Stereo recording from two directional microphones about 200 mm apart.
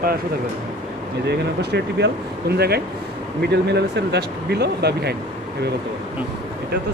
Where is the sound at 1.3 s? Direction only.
55° right (ahead or behind).